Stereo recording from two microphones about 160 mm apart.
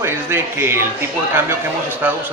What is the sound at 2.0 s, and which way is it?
Speech, 10° right (ahead or behind).